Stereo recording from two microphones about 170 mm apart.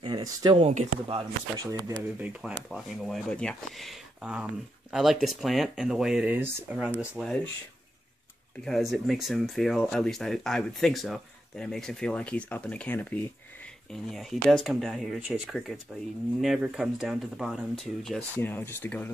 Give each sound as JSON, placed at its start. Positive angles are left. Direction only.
{"t": 0.0, "sound": "speech", "side_deg": -25}
{"t": 2.1, "sound": "speech", "side_deg": -10}
{"t": 8.6, "sound": "speech", "side_deg": 0}